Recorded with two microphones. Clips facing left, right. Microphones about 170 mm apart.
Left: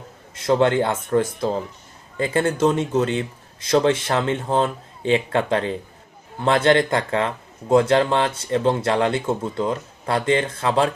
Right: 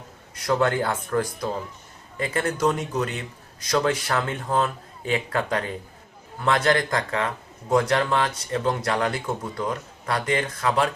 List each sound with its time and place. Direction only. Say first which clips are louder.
0.3 s speech: left 5 dB; 25° left (ahead or behind)